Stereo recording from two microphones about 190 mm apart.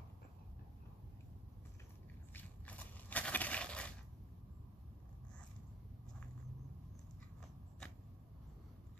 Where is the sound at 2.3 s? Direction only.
10° left (ahead or behind).